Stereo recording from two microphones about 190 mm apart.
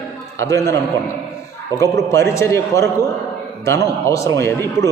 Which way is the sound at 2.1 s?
15° left (ahead or behind).